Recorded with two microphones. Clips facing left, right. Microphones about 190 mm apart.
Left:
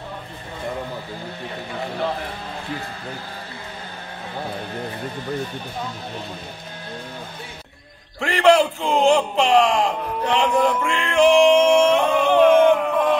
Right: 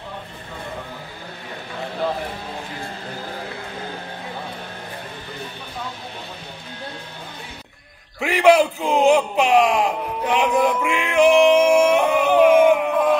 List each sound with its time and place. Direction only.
8.2 s speech: 10° right (ahead or behind)